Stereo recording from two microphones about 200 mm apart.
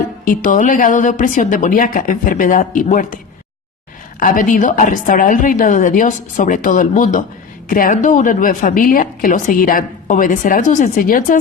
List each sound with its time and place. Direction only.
0.3 s a woman's voice: 40° left (ahead or behind)
4.2 s a woman's voice: 40° left (ahead or behind)